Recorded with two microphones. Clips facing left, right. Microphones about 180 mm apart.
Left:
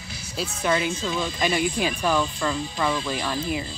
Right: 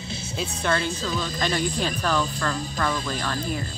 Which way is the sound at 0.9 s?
40° right (ahead or behind).